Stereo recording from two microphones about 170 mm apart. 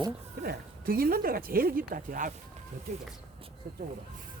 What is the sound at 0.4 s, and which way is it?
Speech, 60° right (ahead or behind).